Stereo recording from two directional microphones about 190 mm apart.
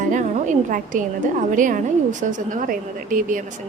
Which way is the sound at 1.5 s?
45° right (ahead or behind).